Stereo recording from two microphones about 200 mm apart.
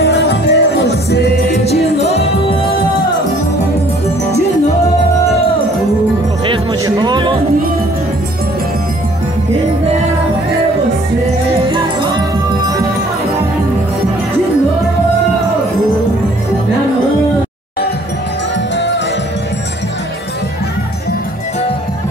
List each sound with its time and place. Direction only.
0.0 s music: 55° left (ahead or behind)
1.5 s music: 30° left (ahead or behind)
6.4 s music: 25° right (ahead or behind)
12.6 s music: 15° right (ahead or behind)